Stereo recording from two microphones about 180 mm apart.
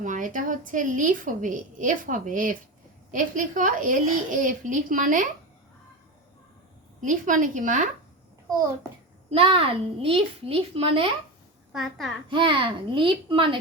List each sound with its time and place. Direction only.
0.0 s a woman's voice: 45° right (ahead or behind)
7.0 s a woman's voice: 45° right (ahead or behind)
9.3 s a child's voice: 30° right (ahead or behind)
11.7 s a child's voice: centre (ahead or behind)
12.3 s a child's voice: 30° right (ahead or behind)